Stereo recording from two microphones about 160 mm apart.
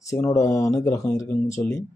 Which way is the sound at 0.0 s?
20° left (ahead or behind).